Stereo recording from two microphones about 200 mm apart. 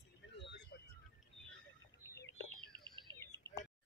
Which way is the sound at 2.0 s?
15° left (ahead or behind).